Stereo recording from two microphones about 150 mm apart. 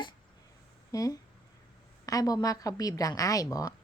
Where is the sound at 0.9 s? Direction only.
25° left (ahead or behind).